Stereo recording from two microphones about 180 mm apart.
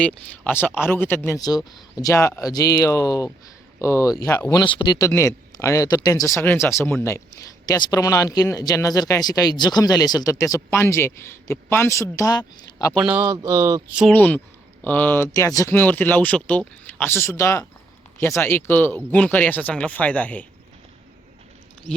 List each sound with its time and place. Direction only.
0.0 s speech: 5° left (ahead or behind)
13.1 s speech: 20° right (ahead or behind)
14.1 s speech: 10° left (ahead or behind)